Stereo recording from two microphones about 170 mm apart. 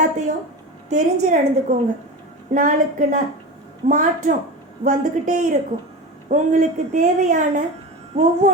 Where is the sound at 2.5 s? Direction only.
50° right (ahead or behind).